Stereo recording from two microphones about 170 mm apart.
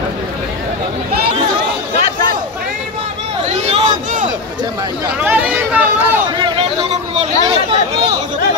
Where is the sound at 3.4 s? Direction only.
40° right (ahead or behind).